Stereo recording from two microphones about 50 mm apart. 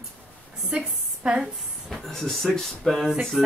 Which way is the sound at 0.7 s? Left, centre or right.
Right.